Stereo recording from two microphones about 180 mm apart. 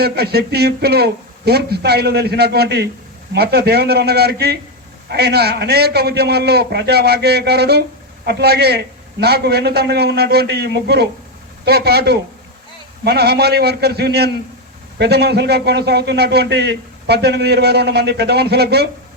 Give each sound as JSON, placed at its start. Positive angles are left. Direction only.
{"t": 0.0, "sound": "a man's voice", "side_deg": -60}